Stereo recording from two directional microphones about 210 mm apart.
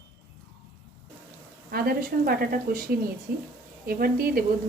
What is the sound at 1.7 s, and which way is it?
A woman's voice, 45° right (ahead or behind).